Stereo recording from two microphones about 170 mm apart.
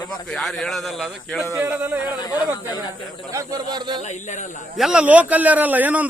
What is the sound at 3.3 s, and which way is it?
Speech, 20° right (ahead or behind).